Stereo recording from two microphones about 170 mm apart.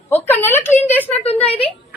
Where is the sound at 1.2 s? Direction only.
35° left (ahead or behind).